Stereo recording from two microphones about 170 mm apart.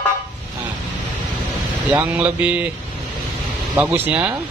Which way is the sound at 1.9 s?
10° right (ahead or behind).